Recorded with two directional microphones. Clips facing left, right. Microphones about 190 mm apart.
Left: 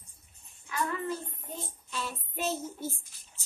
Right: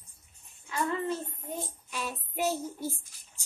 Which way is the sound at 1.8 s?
15° right (ahead or behind).